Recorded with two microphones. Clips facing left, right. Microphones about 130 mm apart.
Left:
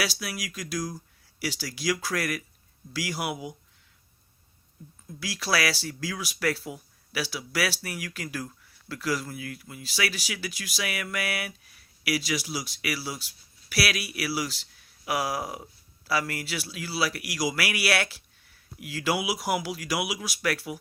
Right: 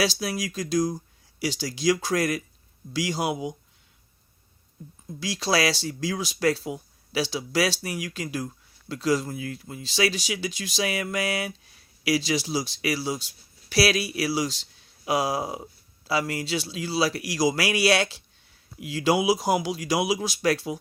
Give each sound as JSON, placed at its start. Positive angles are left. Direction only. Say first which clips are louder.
{"t": 0.0, "sound": "speech", "louder": "right 6 dB", "side_deg": -25}
{"t": 5.0, "sound": "speech", "louder": "right 5 dB", "side_deg": -25}